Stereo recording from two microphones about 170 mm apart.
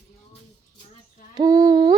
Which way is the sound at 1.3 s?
20° right (ahead or behind).